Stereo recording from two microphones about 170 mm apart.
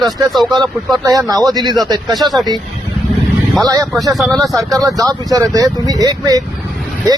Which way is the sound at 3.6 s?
20° right (ahead or behind).